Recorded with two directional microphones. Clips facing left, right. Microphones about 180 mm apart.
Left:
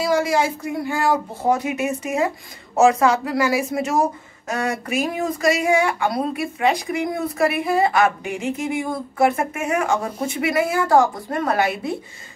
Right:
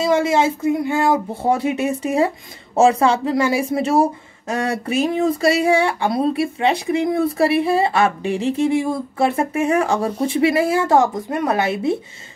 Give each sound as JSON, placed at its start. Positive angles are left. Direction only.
{"t": 0.0, "sound": "speech", "side_deg": -25}